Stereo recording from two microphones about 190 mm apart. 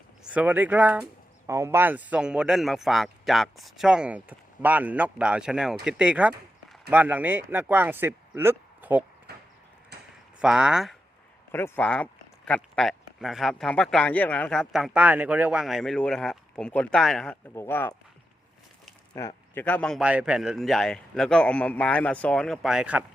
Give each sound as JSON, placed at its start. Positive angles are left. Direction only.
{"t": 0.3, "sound": "speech", "side_deg": -10}
{"t": 9.3, "sound": "a sound", "side_deg": -60}
{"t": 10.4, "sound": "speech", "side_deg": -5}
{"t": 11.5, "sound": "speech", "side_deg": 10}
{"t": 19.1, "sound": "speech", "side_deg": 15}
{"t": 20.0, "sound": "speech", "side_deg": -5}